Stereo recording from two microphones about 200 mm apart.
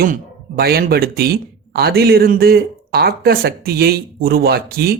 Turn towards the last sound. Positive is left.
turn(degrees=-50)  # may be behind; listen again after turning